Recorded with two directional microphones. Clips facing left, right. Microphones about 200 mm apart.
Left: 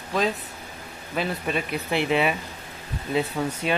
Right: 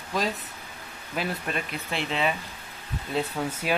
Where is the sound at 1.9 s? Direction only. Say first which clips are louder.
Left 8 dB; 60° left (ahead or behind).